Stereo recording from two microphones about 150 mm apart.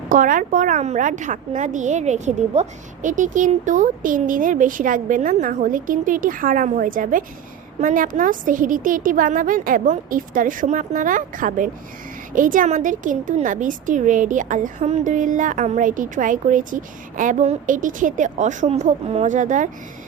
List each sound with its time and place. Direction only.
0.1 s a woman's voice: 65° right (ahead or behind)